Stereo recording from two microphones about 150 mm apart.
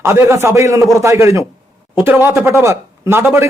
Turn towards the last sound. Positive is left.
turn(degrees=-15)  # may be behind; listen again after turning